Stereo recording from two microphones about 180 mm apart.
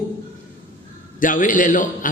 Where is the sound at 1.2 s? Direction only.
45° left (ahead or behind).